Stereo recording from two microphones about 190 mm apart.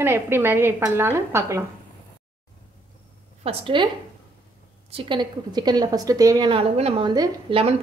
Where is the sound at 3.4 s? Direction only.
25° right (ahead or behind).